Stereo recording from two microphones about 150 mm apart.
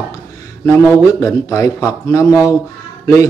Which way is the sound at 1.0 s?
20° left (ahead or behind).